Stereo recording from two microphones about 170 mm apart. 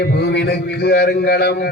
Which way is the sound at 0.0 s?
75° left (ahead or behind).